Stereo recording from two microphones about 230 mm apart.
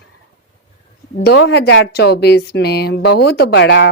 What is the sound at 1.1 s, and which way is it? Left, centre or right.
A woman's voice, left.